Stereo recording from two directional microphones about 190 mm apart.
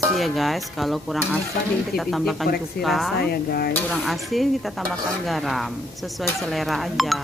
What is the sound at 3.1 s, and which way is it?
Speech, 55° left (ahead or behind).